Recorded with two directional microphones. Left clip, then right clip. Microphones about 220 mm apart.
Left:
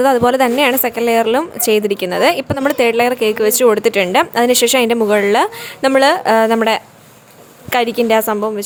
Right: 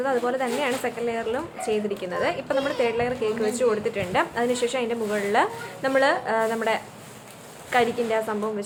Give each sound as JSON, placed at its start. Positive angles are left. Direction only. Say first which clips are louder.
{"t": 0.0, "sound": "a woman's voice", "louder": "left 13 dB", "side_deg": 50}